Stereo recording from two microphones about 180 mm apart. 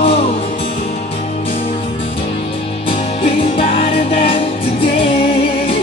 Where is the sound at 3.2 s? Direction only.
30° left (ahead or behind).